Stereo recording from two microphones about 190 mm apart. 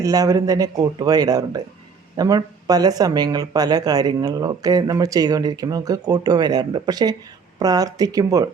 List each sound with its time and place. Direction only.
0.0 s speech: 20° right (ahead or behind)